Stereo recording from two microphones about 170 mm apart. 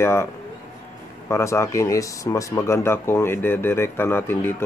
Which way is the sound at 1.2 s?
15° left (ahead or behind).